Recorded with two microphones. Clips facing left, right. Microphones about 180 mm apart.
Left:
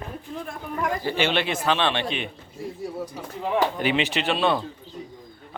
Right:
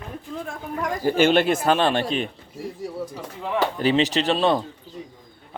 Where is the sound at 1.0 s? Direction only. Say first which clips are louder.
Right 10 dB; 45° right (ahead or behind).